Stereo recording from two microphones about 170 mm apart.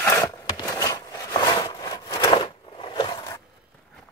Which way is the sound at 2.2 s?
30° left (ahead or behind).